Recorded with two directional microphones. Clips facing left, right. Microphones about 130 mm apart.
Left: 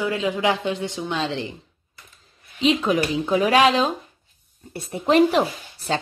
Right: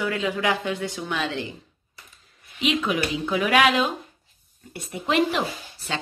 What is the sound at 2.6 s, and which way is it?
Speech, 35° left (ahead or behind).